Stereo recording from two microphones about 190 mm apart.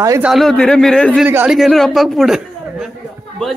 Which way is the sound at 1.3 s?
10° right (ahead or behind).